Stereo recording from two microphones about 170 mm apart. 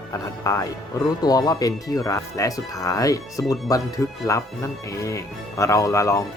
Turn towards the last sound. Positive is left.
turn(degrees=20)  # may be behind; listen again after turning